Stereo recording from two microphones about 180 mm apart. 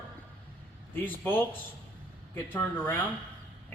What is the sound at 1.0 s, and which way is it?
Speech, 10° left (ahead or behind).